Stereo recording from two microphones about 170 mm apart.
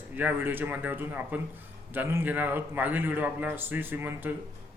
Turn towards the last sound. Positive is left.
turn(degrees=-10)  # may be behind; listen again after turning